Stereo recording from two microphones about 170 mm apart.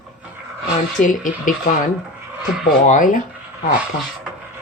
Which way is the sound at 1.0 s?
50° left (ahead or behind).